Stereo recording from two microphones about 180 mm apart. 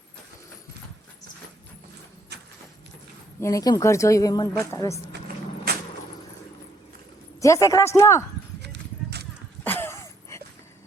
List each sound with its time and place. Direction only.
3.4 s speech: 20° left (ahead or behind)
5.7 s vehicle: 60° right (ahead or behind)
7.4 s speech: 15° left (ahead or behind)
8.6 s clip-clop: 70° right (ahead or behind)
9.6 s a sound: 10° left (ahead or behind)